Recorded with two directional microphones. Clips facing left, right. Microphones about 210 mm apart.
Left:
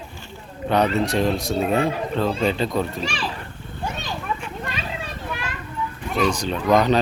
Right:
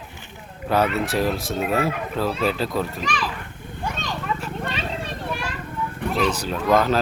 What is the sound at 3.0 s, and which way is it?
Speech, 30° left (ahead or behind).